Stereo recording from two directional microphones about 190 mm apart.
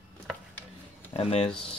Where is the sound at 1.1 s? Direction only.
30° left (ahead or behind).